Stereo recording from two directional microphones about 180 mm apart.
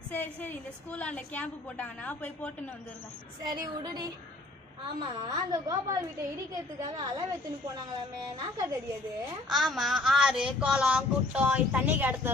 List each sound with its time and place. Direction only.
0.1 s a woman's voice: 10° left (ahead or behind)
3.4 s a woman's voice: 20° right (ahead or behind)
9.5 s speech: centre (ahead or behind)